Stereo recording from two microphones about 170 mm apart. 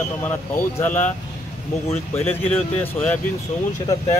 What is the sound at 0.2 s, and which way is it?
Speech, 15° left (ahead or behind).